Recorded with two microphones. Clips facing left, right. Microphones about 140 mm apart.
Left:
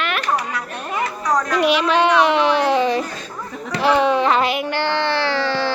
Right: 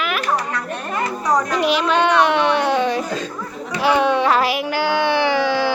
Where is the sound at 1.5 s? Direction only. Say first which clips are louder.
Left 1 dB; centre (ahead or behind).